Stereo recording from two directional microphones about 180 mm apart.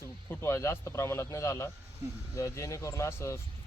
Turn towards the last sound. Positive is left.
turn(degrees=15)  # may be behind; listen again after turning